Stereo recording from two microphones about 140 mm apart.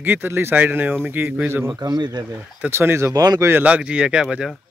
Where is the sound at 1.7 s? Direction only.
30° right (ahead or behind).